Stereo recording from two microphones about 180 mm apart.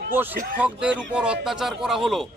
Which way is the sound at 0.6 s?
5° right (ahead or behind).